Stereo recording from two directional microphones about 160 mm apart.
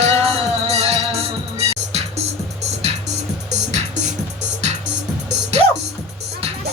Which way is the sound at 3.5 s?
45° right (ahead or behind).